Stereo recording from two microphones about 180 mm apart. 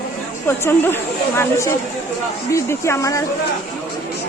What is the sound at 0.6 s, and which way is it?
Speech, 10° left (ahead or behind).